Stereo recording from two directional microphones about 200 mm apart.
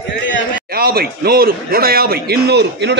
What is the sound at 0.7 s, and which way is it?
A man's voice, 50° right (ahead or behind).